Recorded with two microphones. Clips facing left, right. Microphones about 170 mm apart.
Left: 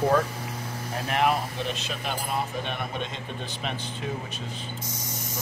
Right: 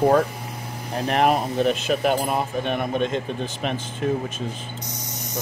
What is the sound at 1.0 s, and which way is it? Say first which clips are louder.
Speech: right 5 dB; 40° right (ahead or behind).